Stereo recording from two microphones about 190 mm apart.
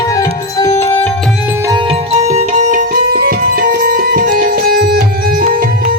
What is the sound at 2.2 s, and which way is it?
Music, 40° right (ahead or behind).